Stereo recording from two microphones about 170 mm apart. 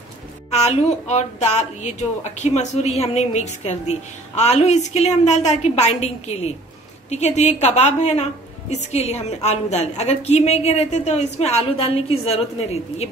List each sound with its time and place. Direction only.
0.5 s a woman's voice: 40° left (ahead or behind)